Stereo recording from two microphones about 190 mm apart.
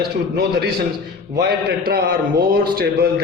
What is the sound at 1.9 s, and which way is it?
A man's voice, 55° right (ahead or behind).